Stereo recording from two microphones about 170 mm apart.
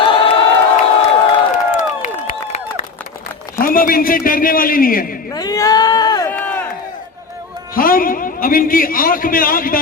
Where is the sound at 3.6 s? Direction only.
55° left (ahead or behind).